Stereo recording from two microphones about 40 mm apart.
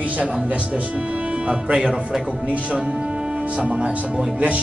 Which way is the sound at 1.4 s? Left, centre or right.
Right.